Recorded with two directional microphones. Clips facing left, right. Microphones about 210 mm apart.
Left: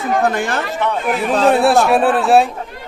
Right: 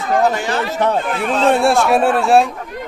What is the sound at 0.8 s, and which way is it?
Speech, 40° right (ahead or behind).